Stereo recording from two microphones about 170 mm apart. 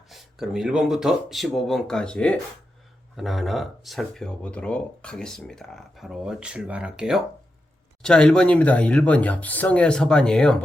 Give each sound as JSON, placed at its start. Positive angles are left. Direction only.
{"t": 0.1, "sound": "speech", "side_deg": 0}